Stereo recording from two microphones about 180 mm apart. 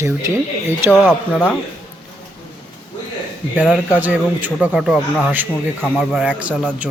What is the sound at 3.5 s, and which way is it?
A man's voice, 10° right (ahead or behind).